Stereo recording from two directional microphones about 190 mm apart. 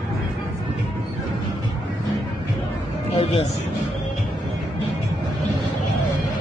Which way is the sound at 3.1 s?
30° left (ahead or behind).